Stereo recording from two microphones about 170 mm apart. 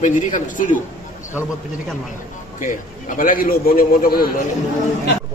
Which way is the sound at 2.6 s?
50° left (ahead or behind).